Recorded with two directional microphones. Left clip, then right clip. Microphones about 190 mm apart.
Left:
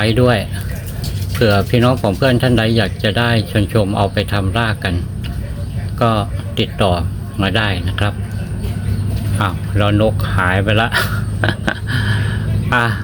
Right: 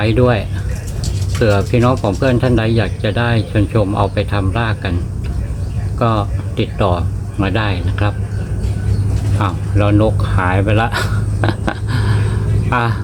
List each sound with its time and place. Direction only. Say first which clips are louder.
0.0 s speech: even; 20° left (ahead or behind)
6.0 s speech: left 1 dB; 15° left (ahead or behind)
9.4 s speech: even; 5° left (ahead or behind)